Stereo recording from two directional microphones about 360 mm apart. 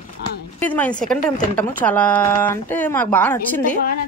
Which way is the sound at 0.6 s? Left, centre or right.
Centre.